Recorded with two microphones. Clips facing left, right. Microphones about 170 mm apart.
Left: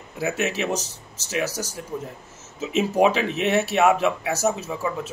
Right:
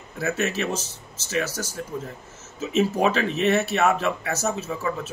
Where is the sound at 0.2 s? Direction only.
15° left (ahead or behind).